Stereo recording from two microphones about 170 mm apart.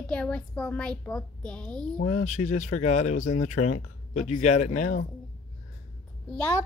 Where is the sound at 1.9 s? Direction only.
45° left (ahead or behind).